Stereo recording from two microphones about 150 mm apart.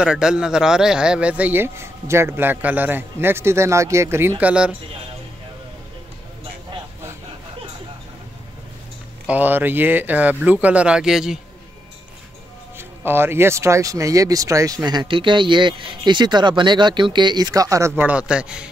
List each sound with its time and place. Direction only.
0.0 s speech: 5° right (ahead or behind)
9.3 s speech: 10° right (ahead or behind)
12.7 s speech: 15° right (ahead or behind)